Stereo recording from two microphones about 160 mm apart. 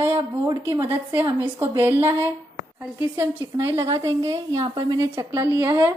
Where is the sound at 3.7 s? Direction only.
20° right (ahead or behind).